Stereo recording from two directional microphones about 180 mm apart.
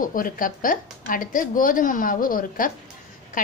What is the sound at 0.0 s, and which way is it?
A woman's voice, 50° left (ahead or behind).